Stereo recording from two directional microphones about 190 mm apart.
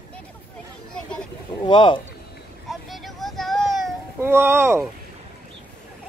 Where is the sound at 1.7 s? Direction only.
25° left (ahead or behind).